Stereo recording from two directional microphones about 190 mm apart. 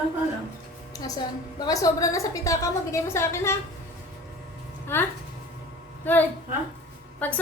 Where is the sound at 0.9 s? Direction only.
20° left (ahead or behind).